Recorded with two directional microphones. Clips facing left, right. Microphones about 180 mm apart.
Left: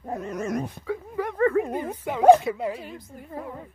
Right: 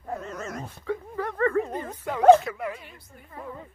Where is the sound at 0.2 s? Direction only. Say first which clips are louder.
Left 7 dB; 15° left (ahead or behind).